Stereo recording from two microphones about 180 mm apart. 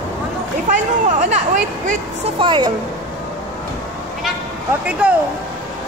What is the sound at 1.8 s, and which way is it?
Speech, 30° right (ahead or behind).